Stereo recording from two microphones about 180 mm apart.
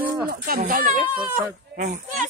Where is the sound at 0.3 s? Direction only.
50° right (ahead or behind).